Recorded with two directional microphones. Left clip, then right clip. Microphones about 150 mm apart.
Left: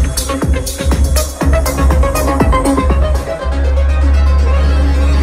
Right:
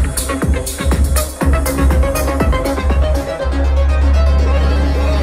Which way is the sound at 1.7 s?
40° left (ahead or behind).